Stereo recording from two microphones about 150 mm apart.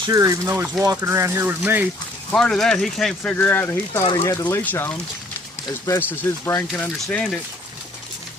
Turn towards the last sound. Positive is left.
turn(degrees=5)  # may be behind; listen again after turning